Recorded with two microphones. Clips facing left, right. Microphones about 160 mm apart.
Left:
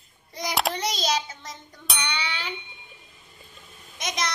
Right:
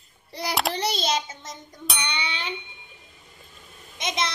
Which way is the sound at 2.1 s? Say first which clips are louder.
Even; 20° right (ahead or behind).